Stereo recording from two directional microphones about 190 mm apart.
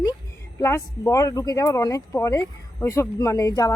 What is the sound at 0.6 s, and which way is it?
Speech, 15° left (ahead or behind).